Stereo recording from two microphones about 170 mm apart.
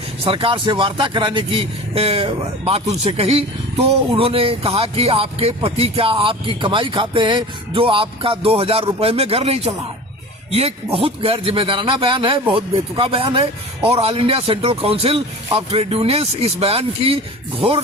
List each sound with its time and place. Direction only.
0.3 s speech: 30° right (ahead or behind)